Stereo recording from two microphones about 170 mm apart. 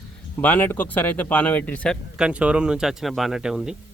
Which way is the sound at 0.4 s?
10° left (ahead or behind).